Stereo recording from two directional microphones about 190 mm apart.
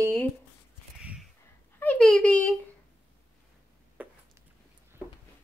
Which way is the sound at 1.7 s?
5° left (ahead or behind).